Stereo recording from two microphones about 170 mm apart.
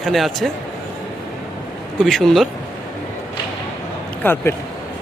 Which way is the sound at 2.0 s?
Centre (ahead or behind).